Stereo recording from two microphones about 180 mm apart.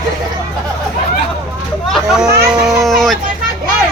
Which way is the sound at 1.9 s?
Centre (ahead or behind).